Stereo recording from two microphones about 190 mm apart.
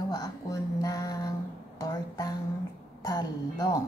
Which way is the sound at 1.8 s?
20° left (ahead or behind).